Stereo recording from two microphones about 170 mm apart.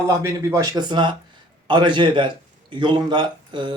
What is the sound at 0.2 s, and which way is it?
A man's voice, 20° right (ahead or behind).